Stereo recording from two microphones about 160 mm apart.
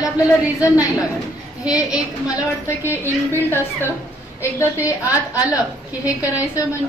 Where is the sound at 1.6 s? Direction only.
5° right (ahead or behind).